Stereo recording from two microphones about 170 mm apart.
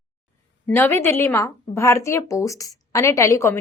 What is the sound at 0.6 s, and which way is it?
A woman's voice, 10° left (ahead or behind).